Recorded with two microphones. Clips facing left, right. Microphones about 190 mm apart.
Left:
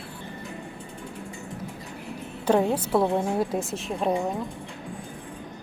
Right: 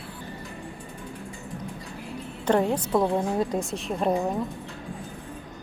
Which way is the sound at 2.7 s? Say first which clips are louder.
Even; 5° left (ahead or behind).